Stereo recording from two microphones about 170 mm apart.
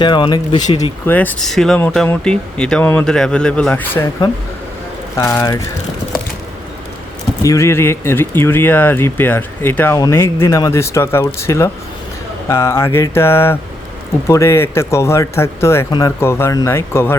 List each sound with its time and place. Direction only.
0.0 s speech: 25° left (ahead or behind)
1.0 s speech: 10° left (ahead or behind)
7.4 s speech: 15° left (ahead or behind)